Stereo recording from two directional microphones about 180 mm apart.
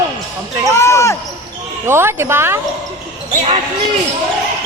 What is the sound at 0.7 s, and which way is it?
Speech, 15° left (ahead or behind).